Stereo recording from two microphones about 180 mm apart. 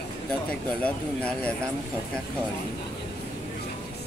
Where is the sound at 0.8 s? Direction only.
5° left (ahead or behind).